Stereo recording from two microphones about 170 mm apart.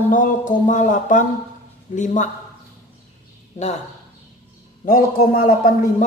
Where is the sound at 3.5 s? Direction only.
45° left (ahead or behind).